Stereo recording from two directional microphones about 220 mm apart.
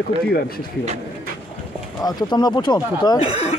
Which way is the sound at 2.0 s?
20° left (ahead or behind).